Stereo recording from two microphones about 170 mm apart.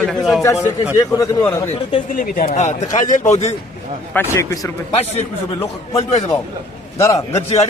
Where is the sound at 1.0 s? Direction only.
20° left (ahead or behind).